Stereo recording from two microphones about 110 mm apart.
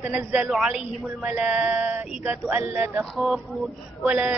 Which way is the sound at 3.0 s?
Centre (ahead or behind).